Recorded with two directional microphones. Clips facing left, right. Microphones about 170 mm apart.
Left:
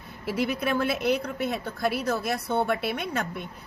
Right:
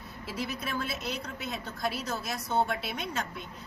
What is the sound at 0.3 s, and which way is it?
A woman's voice, 60° left (ahead or behind).